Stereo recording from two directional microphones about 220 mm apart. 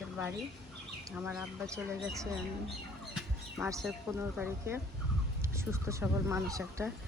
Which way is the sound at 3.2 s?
5° right (ahead or behind).